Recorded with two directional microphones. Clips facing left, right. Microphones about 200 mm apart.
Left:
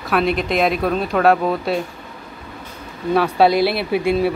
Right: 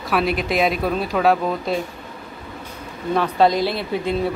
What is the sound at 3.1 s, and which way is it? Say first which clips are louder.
Speech: left 2 dB; 10° left (ahead or behind).